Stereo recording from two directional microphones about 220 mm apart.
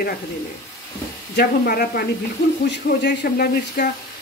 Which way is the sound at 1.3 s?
45° left (ahead or behind).